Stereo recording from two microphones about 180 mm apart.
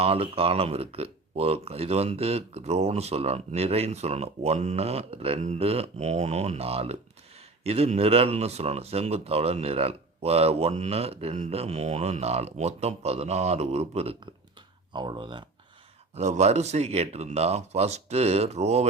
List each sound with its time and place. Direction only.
0.0 s speech: 35° right (ahead or behind)
16.1 s speech: 40° right (ahead or behind)